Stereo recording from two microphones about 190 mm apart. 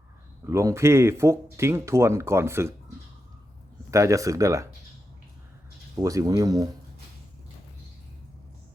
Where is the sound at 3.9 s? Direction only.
15° right (ahead or behind).